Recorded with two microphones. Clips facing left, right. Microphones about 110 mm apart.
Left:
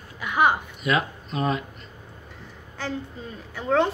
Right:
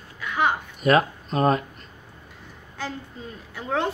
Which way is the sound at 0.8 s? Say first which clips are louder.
Right 5 dB; 45° right (ahead or behind).